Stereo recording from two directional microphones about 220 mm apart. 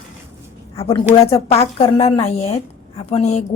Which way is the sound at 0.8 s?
25° left (ahead or behind).